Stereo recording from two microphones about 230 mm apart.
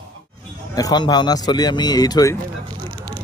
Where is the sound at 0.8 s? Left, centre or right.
Centre.